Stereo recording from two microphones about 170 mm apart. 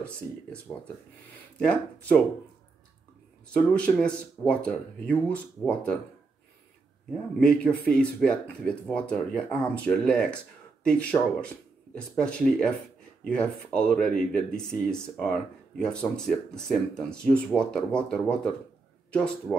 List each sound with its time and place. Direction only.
0.0 s speech: 5° left (ahead or behind)
3.7 s speech: 5° left (ahead or behind)
7.1 s a man's voice: 5° left (ahead or behind)